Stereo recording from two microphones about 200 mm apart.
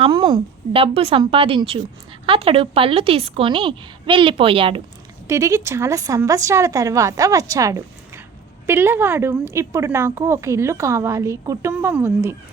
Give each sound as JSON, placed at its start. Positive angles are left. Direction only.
{"t": 0.0, "sound": "a woman's voice", "side_deg": -25}
{"t": 5.3, "sound": "speech", "side_deg": -15}